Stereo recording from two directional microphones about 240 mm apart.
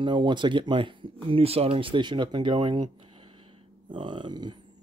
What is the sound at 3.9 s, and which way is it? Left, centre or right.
Speech, centre.